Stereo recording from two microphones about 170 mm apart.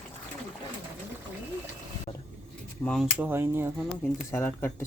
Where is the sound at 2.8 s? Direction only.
5° left (ahead or behind).